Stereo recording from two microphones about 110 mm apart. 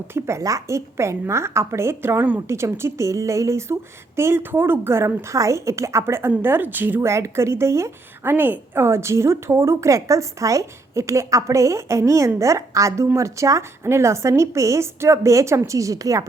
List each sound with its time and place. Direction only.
0.1 s a woman's voice: 25° right (ahead or behind)